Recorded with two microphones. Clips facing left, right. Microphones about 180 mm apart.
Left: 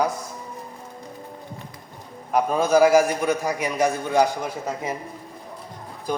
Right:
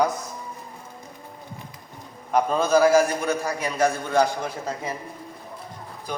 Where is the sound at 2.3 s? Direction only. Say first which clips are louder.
Left 1 dB; 15° left (ahead or behind).